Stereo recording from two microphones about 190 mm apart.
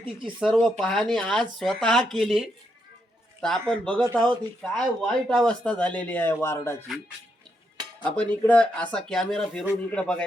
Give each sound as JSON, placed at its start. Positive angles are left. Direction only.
{"t": 0.0, "sound": "speech", "side_deg": -25}
{"t": 0.3, "sound": "speech", "side_deg": 0}
{"t": 3.7, "sound": "speech", "side_deg": 5}
{"t": 8.0, "sound": "speech", "side_deg": 5}